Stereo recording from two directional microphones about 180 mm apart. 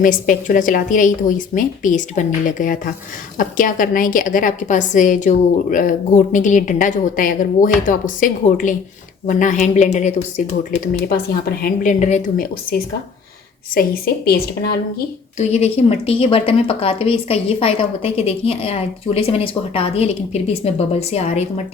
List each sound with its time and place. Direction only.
0.0 s a woman's voice: 45° left (ahead or behind)
13.7 s a woman's voice: 55° left (ahead or behind)
15.4 s speech: 35° left (ahead or behind)